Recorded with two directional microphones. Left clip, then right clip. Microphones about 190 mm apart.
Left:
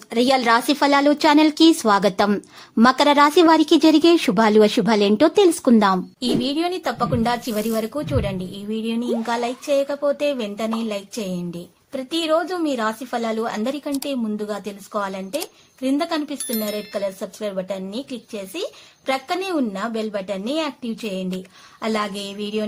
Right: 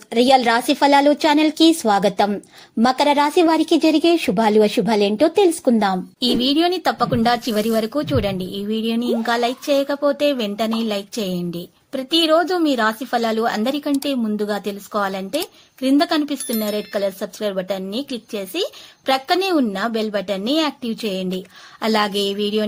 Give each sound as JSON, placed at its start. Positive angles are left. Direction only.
{"t": 0.1, "sound": "a woman's voice", "side_deg": 0}
{"t": 6.4, "sound": "speech", "side_deg": -25}
{"t": 16.5, "sound": "a woman's voice", "side_deg": 0}
{"t": 16.7, "sound": "speech", "side_deg": -25}